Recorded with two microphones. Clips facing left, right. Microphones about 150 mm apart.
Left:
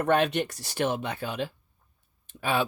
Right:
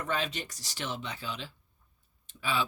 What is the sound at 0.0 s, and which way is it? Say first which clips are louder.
Speech: left 10 dB; 60° left (ahead or behind).